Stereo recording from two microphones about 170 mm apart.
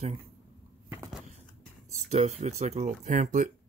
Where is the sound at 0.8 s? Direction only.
20° right (ahead or behind).